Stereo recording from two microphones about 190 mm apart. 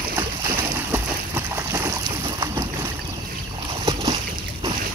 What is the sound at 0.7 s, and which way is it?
Boat, 10° right (ahead or behind).